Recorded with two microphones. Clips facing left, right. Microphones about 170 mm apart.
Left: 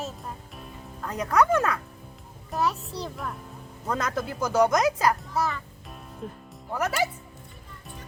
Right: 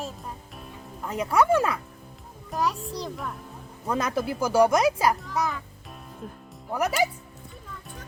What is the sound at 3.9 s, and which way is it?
Speech, 10° right (ahead or behind).